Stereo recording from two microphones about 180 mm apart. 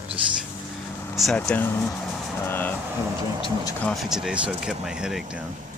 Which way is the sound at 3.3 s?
30° left (ahead or behind).